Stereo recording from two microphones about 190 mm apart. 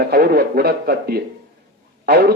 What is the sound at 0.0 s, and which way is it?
A man's voice, 55° right (ahead or behind).